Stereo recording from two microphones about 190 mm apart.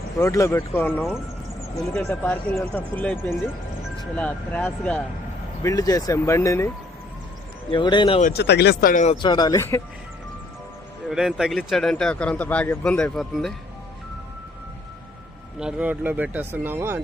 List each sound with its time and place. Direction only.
0.2 s speech: 15° left (ahead or behind)
7.7 s speech: 25° left (ahead or behind)
8.3 s speech: 60° left (ahead or behind); by 9.1 s 45° left (ahead or behind)
9.2 s speech: 20° left (ahead or behind)
11.1 s speech: centre (ahead or behind)
15.5 s speech: 5° right (ahead or behind)